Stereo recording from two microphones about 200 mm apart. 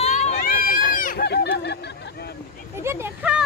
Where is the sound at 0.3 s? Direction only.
50° left (ahead or behind).